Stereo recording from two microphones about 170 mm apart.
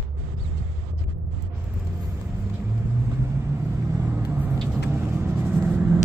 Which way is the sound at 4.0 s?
15° right (ahead or behind).